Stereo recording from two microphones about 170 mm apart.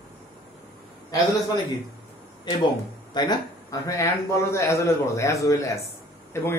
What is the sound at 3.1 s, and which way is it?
A man's voice, 25° left (ahead or behind).